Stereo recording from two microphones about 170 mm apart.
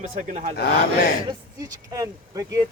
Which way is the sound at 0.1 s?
45° right (ahead or behind).